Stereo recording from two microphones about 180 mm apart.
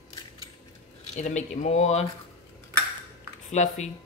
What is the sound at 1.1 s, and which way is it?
Speech, 40° left (ahead or behind).